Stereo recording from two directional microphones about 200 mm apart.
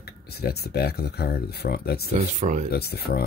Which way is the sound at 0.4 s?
50° left (ahead or behind).